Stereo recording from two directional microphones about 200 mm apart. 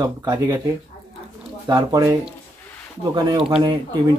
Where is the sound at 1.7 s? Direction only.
20° right (ahead or behind).